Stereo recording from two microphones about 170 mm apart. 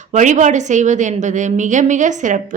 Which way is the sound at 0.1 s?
45° right (ahead or behind).